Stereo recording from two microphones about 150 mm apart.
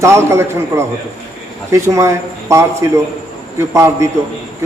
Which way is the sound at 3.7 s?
20° right (ahead or behind).